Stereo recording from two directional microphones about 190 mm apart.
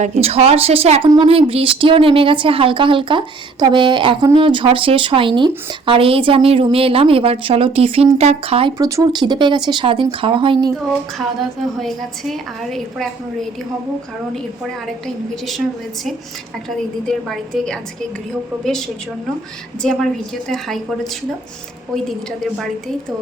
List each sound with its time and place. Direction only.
0.0 s speech: 30° right (ahead or behind)
11.8 s a woman's voice: centre (ahead or behind)
16.6 s a woman's voice: centre (ahead or behind)
22.5 s a woman's voice: centre (ahead or behind)